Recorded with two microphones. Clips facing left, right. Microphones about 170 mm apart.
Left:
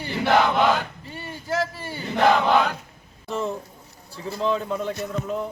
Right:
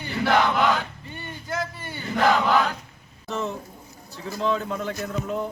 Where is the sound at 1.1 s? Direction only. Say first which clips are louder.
Left 4 dB; 30° left (ahead or behind).